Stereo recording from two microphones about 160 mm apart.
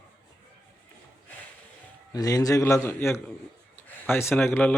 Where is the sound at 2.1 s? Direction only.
25° left (ahead or behind).